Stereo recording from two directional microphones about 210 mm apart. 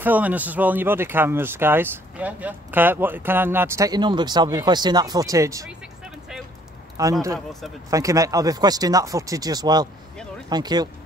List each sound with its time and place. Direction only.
0.0 s speech: 10° right (ahead or behind)
7.0 s speech: 15° right (ahead or behind)